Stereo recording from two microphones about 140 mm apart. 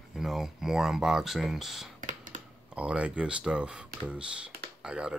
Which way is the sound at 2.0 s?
70° right (ahead or behind).